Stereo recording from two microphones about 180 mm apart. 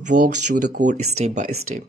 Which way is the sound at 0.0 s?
45° right (ahead or behind).